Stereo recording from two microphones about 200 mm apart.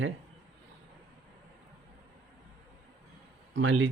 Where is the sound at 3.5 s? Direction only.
70° right (ahead or behind).